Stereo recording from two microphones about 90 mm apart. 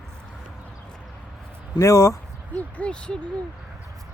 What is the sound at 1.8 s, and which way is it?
Speech, 35° left (ahead or behind).